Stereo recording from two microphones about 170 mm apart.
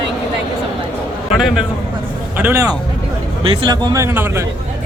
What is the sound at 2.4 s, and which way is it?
Speech, 15° right (ahead or behind).